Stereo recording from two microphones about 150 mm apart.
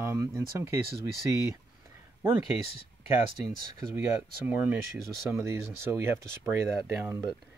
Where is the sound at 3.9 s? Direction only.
10° right (ahead or behind).